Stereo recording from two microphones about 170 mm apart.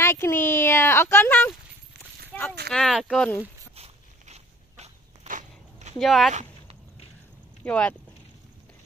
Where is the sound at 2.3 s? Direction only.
5° left (ahead or behind).